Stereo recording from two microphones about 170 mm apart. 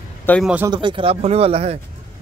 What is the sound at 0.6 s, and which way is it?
Speech, 25° right (ahead or behind).